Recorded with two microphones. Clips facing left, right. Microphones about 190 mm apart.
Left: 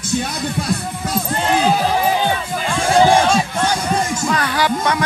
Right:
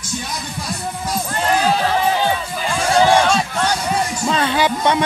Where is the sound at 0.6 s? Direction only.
60° left (ahead or behind).